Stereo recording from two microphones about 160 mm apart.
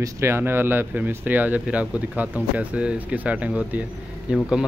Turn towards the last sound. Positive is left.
turn(degrees=-5)  # may be behind; listen again after turning